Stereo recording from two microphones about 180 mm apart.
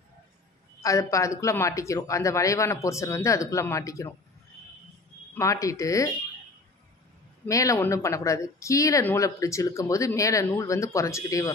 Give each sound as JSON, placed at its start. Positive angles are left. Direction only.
{"t": 0.8, "sound": "speech", "side_deg": 20}
{"t": 5.3, "sound": "speech", "side_deg": 15}
{"t": 7.4, "sound": "speech", "side_deg": 20}